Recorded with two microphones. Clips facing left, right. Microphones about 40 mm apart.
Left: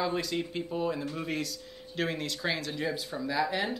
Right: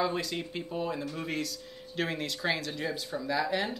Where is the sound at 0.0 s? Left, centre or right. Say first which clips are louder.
Even; centre.